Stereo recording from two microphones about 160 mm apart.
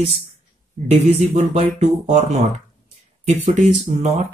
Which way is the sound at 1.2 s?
45° right (ahead or behind).